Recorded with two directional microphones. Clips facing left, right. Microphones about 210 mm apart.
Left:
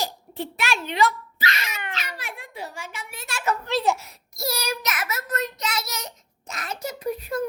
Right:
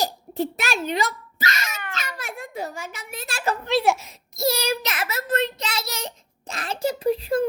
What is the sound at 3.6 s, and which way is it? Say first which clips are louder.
A child's voice: right 5 dB; 15° right (ahead or behind).